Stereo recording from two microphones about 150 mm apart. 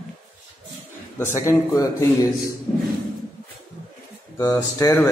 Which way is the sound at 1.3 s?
20° left (ahead or behind).